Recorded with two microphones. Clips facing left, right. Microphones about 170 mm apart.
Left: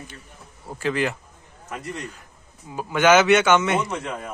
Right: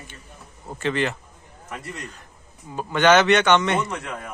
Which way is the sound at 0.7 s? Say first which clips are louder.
Even; centre (ahead or behind).